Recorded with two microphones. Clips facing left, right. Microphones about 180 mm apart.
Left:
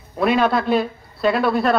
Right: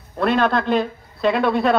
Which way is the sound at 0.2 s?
10° left (ahead or behind).